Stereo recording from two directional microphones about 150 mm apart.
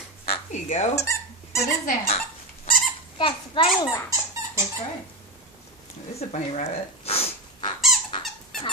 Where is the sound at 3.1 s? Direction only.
35° left (ahead or behind).